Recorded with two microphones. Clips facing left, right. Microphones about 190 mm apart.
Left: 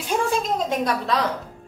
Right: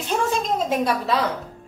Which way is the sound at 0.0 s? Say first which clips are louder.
Even; 10° left (ahead or behind).